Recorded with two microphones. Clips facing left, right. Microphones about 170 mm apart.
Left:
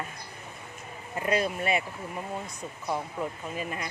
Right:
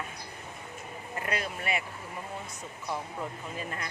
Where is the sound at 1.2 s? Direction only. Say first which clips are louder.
Left 7 dB; 25° left (ahead or behind).